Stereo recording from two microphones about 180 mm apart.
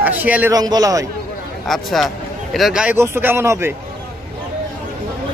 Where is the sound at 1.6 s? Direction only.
Centre (ahead or behind).